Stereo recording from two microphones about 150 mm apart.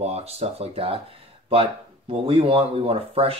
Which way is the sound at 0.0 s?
45° right (ahead or behind).